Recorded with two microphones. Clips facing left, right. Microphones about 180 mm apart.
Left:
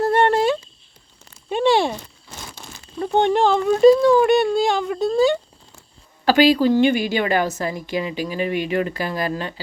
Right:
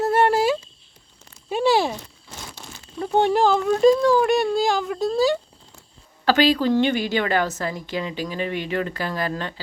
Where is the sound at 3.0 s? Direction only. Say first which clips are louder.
Left 1 dB; 5° right (ahead or behind).